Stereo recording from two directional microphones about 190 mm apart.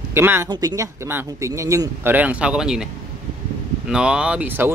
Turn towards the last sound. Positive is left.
turn(degrees=-10)  # may be behind; listen again after turning